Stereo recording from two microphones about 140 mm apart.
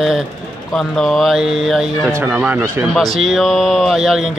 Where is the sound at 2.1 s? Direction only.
15° right (ahead or behind).